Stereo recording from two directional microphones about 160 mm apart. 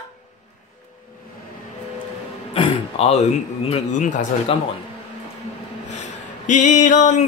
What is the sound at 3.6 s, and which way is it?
Speech, 45° left (ahead or behind).